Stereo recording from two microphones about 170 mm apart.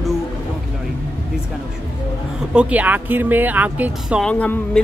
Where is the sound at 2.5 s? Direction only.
10° right (ahead or behind).